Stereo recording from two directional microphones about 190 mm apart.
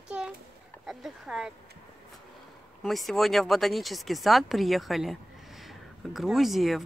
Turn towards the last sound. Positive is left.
turn(degrees=0)  # may be behind; listen again after turning